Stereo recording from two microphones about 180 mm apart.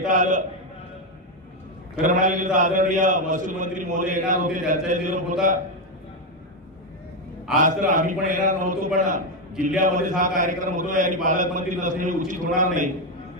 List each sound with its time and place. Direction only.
0.1 s a man's voice: 45° right (ahead or behind)
2.0 s a man's voice: 45° right (ahead or behind)
7.6 s a man's voice: 45° right (ahead or behind)